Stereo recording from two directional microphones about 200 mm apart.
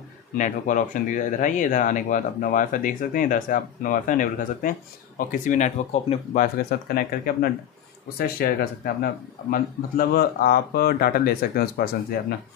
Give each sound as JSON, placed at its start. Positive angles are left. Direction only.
{"t": 0.4, "sound": "speech", "side_deg": 40}